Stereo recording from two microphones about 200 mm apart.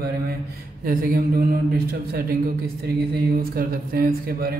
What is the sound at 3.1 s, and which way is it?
Mantra, 45° right (ahead or behind).